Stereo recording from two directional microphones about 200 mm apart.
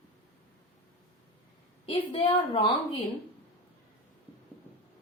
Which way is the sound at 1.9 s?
30° left (ahead or behind).